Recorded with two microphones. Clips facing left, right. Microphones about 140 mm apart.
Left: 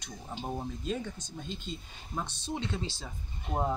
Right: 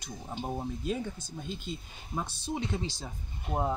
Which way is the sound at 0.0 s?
10° right (ahead or behind).